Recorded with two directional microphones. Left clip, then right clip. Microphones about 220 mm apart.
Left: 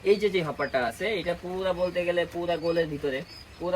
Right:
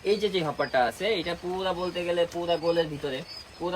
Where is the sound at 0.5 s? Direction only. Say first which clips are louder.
Right 2 dB; 25° right (ahead or behind).